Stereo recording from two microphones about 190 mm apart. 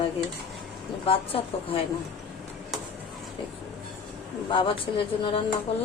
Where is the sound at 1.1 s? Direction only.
30° left (ahead or behind).